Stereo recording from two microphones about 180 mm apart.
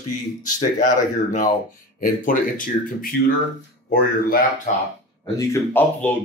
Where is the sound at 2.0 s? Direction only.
50° left (ahead or behind).